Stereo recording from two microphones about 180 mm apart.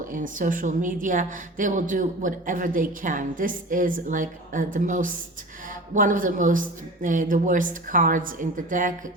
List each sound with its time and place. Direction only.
0.0 s a woman's voice: 50° right (ahead or behind)